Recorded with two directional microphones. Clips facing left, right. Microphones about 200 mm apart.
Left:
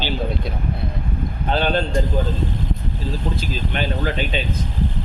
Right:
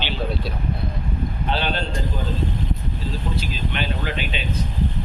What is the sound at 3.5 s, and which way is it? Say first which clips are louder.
Speech: left 3 dB; 40° left (ahead or behind).